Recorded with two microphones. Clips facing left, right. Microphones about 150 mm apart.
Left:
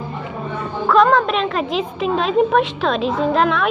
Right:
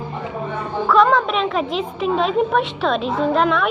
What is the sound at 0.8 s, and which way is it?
A woman's voice, 5° right (ahead or behind).